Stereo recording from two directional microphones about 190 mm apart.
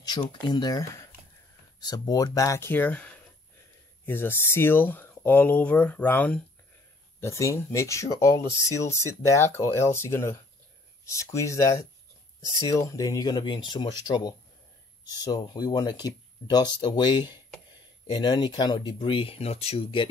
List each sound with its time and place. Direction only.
0.0 s speech: 20° left (ahead or behind)